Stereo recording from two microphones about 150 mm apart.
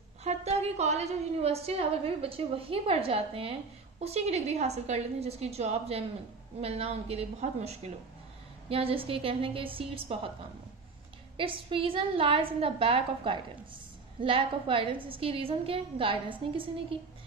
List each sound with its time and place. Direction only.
0.2 s a woman's voice: 45° right (ahead or behind)
11.3 s a woman's voice: 35° right (ahead or behind)